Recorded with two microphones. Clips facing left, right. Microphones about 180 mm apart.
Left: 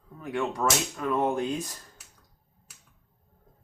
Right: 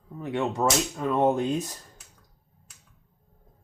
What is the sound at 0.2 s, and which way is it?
Speech, 25° right (ahead or behind).